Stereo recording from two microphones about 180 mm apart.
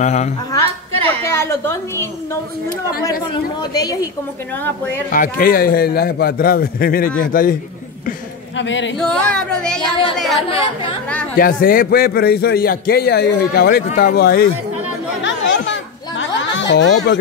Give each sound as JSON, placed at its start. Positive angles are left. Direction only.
{"t": 0.0, "sound": "a woman's voice", "side_deg": 40}
{"t": 1.0, "sound": "a woman's voice", "side_deg": 15}
{"t": 3.7, "sound": "a woman's voice", "side_deg": 20}
{"t": 5.1, "sound": "a man's voice", "side_deg": 50}
{"t": 8.5, "sound": "speech", "side_deg": 90}
{"t": 8.9, "sound": "speech", "side_deg": 5}
{"t": 9.8, "sound": "a woman's voice", "side_deg": 25}
{"t": 10.1, "sound": "speech", "side_deg": 0}
{"t": 11.3, "sound": "a man's voice", "side_deg": 55}
{"t": 15.2, "sound": "chatter", "side_deg": 90}